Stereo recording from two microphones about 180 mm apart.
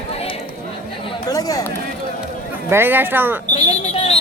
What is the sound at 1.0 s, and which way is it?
Chatter, 20° left (ahead or behind).